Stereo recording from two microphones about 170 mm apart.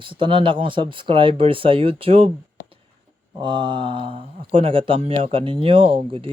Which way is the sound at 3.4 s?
30° right (ahead or behind).